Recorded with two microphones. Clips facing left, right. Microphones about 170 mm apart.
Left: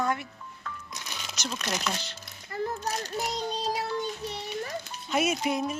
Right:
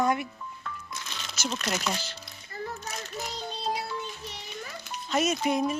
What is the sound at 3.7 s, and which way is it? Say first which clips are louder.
Music: left 4 dB; 40° left (ahead or behind).